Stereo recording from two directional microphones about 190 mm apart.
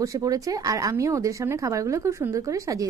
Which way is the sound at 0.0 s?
15° right (ahead or behind).